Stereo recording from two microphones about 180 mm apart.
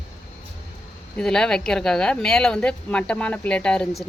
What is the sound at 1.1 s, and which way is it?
Speech, 5° left (ahead or behind).